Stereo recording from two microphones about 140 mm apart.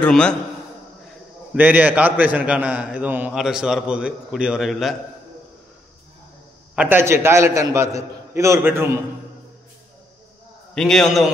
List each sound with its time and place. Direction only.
0.0 s a man's voice: 5° left (ahead or behind)
1.5 s a man's voice: 10° right (ahead or behind)
6.7 s a man's voice: 10° right (ahead or behind)
10.7 s a man's voice: 5° left (ahead or behind)